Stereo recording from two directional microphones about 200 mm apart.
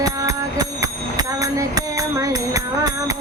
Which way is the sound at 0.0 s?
15° right (ahead or behind).